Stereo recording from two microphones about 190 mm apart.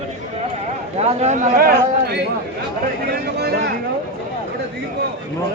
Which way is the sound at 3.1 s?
55° right (ahead or behind).